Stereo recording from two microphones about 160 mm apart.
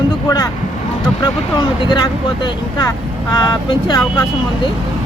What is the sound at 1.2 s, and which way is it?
Speech, 25° left (ahead or behind).